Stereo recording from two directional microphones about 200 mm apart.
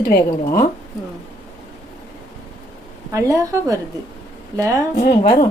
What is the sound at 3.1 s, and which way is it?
Speech, 15° right (ahead or behind).